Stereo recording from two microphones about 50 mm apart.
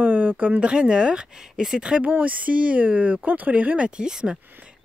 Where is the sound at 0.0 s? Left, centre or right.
Right.